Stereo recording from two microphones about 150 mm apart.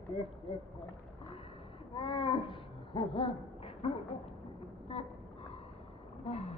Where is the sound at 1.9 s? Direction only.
35° left (ahead or behind).